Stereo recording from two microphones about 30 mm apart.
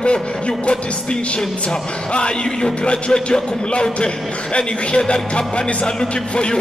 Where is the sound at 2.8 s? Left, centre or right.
Left.